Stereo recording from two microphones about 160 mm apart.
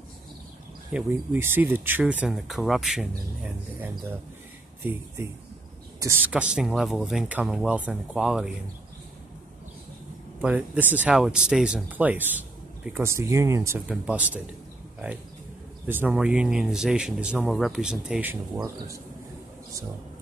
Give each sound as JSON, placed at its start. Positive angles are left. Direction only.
{"t": 0.9, "sound": "speech", "side_deg": -10}
{"t": 4.8, "sound": "speech", "side_deg": -15}
{"t": 10.4, "sound": "speech", "side_deg": -10}
{"t": 15.9, "sound": "speech", "side_deg": -10}
{"t": 18.3, "sound": "speech", "side_deg": -15}